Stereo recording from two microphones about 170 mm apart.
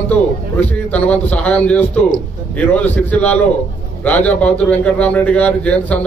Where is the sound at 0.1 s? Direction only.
10° left (ahead or behind).